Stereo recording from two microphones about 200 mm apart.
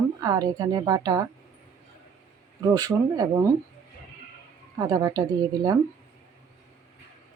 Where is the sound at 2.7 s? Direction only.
20° right (ahead or behind).